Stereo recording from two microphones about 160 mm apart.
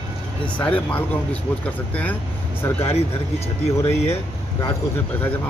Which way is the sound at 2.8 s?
40° left (ahead or behind).